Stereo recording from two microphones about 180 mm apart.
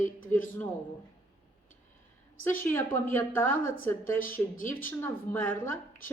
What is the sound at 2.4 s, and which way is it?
A woman's voice, 10° left (ahead or behind).